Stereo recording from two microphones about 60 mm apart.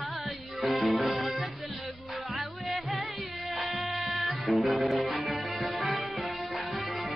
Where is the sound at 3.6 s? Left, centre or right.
Centre.